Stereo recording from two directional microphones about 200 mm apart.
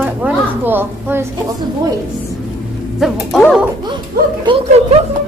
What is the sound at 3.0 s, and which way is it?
Music, centre (ahead or behind).